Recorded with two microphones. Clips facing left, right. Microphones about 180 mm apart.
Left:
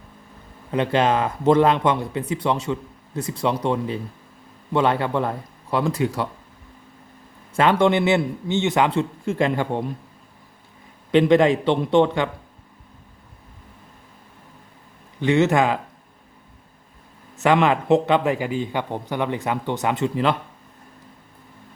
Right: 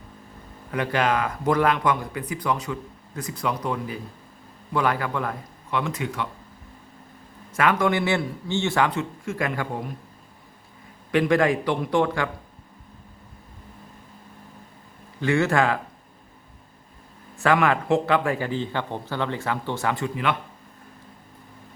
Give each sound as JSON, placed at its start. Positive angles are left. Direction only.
{"t": 0.7, "sound": "speech", "side_deg": 25}
{"t": 7.5, "sound": "speech", "side_deg": 30}
{"t": 11.1, "sound": "speech", "side_deg": 25}
{"t": 15.2, "sound": "speech", "side_deg": 20}
{"t": 17.3, "sound": "speech", "side_deg": 20}